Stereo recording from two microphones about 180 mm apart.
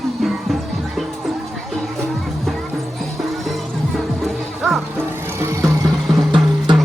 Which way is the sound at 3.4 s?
Centre (ahead or behind).